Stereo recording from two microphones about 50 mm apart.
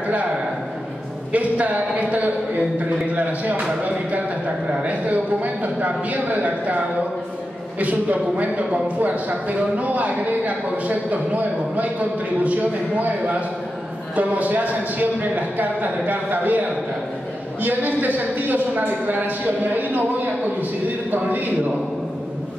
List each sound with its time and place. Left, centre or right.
1.3 s a man's voice: right
4.8 s a man's voice: right
7.8 s a man's voice: right